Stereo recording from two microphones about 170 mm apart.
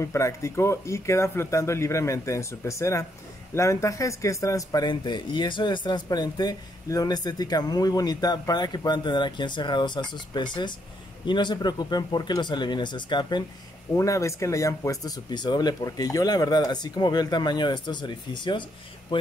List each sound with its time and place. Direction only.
0.0 s speech: 15° left (ahead or behind)